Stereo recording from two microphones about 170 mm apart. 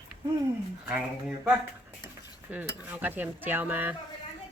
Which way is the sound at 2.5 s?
10° right (ahead or behind).